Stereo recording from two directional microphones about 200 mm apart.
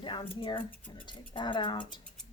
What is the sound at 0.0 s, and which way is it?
Speech, 25° left (ahead or behind).